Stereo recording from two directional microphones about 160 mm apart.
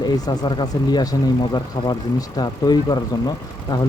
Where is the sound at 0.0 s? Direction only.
25° left (ahead or behind).